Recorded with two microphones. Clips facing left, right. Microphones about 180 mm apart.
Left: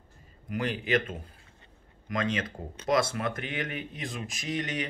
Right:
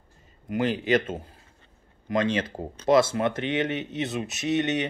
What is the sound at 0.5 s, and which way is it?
Speech, 25° right (ahead or behind).